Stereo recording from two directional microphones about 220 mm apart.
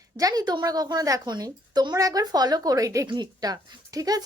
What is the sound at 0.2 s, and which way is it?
A woman's voice, 15° right (ahead or behind).